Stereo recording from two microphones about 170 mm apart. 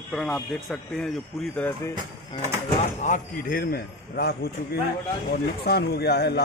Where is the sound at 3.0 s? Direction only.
50° left (ahead or behind).